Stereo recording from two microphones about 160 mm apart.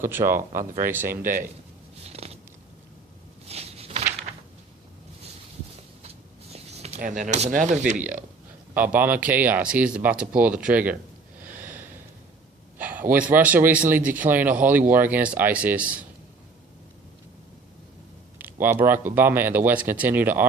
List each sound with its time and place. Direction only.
0.0 s speech: 15° right (ahead or behind)
0.6 s speech: 55° right (ahead or behind)
0.9 s speech: 15° right (ahead or behind)
1.2 s speech: 55° right (ahead or behind)
2.0 s a sound: 40° right (ahead or behind)
3.4 s a sound: 40° right (ahead or behind)
6.0 s a sound: 40° right (ahead or behind)
7.0 s speech: 55° right (ahead or behind)
8.7 s speech: 10° right (ahead or behind)
11.5 s snort: 10° right (ahead or behind)
12.8 s a sound: 10° right (ahead or behind)
13.1 s speech: 10° right (ahead or behind)
18.6 s speech: 10° right (ahead or behind)